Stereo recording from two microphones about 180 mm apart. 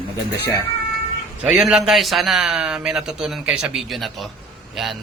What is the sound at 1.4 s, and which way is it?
A man's voice, 5° right (ahead or behind).